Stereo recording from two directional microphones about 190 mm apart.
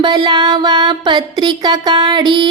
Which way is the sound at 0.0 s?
25° right (ahead or behind).